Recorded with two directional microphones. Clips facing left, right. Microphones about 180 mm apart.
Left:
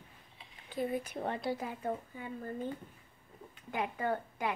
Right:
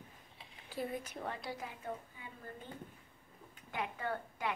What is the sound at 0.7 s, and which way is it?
Speech, centre (ahead or behind).